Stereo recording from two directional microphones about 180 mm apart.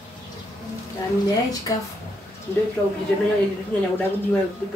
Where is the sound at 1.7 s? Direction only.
20° left (ahead or behind).